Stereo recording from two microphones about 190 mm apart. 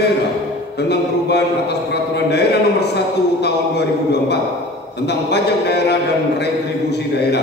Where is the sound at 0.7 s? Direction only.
60° left (ahead or behind).